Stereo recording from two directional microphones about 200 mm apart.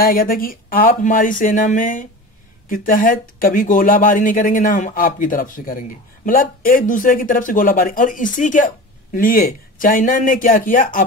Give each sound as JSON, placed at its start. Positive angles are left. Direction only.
{"t": 0.0, "sound": "speech", "side_deg": 45}